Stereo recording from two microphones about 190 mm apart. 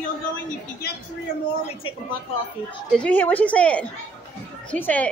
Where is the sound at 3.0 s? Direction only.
10° left (ahead or behind).